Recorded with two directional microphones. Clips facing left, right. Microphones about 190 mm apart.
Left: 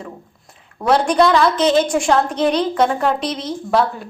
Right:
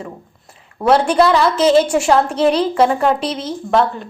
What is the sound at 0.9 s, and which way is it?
A woman's voice, 5° right (ahead or behind).